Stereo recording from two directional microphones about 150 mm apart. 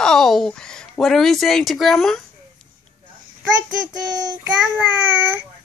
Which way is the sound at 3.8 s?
25° right (ahead or behind).